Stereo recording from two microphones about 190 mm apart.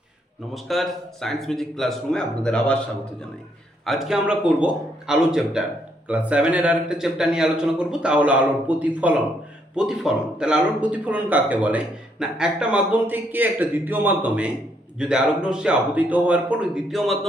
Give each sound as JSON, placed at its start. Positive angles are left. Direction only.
{"t": 0.5, "sound": "a man's voice", "side_deg": 0}
{"t": 3.8, "sound": "a man's voice", "side_deg": 0}